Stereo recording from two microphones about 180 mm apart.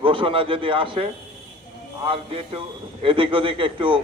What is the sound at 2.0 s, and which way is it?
Music, 30° right (ahead or behind).